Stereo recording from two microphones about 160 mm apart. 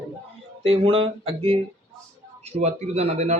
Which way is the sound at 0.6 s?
35° right (ahead or behind).